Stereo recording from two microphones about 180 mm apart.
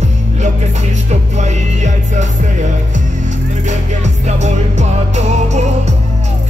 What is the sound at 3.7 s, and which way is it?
Music, 40° right (ahead or behind).